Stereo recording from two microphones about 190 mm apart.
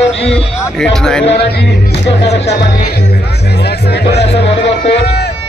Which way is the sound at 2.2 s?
65° left (ahead or behind).